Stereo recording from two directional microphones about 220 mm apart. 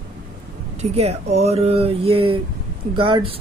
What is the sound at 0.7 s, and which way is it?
Speech, 30° right (ahead or behind).